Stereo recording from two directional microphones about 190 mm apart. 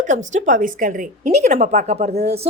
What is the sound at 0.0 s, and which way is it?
Speech, 40° right (ahead or behind).